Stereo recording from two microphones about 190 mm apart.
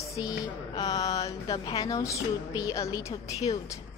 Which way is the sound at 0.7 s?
20° left (ahead or behind).